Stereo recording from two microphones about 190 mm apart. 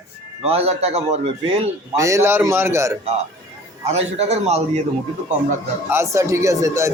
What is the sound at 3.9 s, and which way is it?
Speech, 35° right (ahead or behind).